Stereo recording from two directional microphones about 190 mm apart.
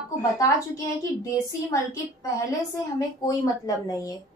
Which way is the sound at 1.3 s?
15° left (ahead or behind).